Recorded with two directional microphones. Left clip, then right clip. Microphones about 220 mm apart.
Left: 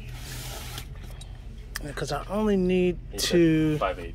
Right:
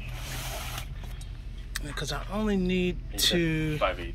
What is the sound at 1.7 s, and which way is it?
Speech, 20° left (ahead or behind).